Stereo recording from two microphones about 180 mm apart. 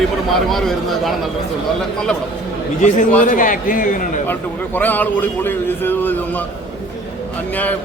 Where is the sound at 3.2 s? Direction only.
50° left (ahead or behind).